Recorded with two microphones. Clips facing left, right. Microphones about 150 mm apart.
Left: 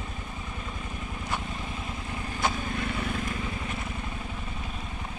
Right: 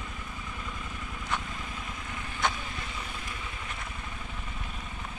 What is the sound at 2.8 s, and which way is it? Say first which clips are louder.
Vehicle: left 9 dB; 60° left (ahead or behind).